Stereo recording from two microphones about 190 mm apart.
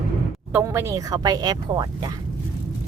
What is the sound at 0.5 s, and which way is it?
Speech, 10° right (ahead or behind).